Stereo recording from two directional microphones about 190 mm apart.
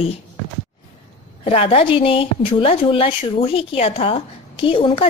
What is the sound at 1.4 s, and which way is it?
A woman's voice, 30° left (ahead or behind).